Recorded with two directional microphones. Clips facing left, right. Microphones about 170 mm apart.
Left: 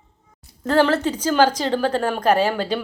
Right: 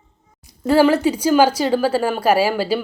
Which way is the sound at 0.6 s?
10° right (ahead or behind).